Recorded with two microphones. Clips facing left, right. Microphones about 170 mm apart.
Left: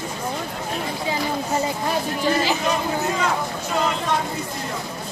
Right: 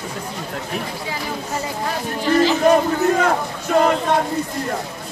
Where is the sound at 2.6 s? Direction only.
50° right (ahead or behind).